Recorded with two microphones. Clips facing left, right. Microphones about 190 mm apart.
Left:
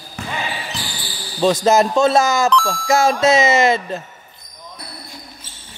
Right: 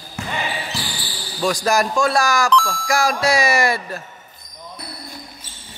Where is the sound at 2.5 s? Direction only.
Centre (ahead or behind).